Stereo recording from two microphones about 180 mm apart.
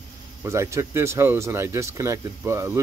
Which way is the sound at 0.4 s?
15° right (ahead or behind).